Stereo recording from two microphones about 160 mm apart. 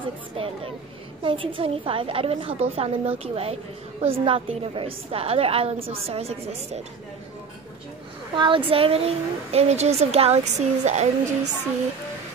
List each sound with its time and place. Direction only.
0.4 s speech: 35° right (ahead or behind)
8.4 s speech: 35° right (ahead or behind)